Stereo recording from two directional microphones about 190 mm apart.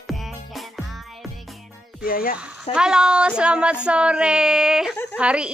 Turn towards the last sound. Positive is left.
turn(degrees=-5)  # may be behind; listen again after turning